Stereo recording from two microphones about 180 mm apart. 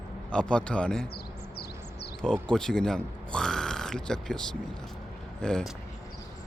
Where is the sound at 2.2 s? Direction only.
5° left (ahead or behind).